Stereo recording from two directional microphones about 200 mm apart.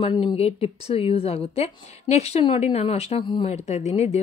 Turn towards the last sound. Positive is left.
turn(degrees=35)  # may be behind; listen again after turning